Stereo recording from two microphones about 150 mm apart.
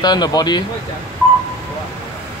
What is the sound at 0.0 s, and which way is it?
Speech, 25° left (ahead or behind).